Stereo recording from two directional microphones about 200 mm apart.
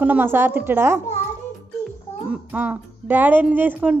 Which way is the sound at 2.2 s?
5° right (ahead or behind).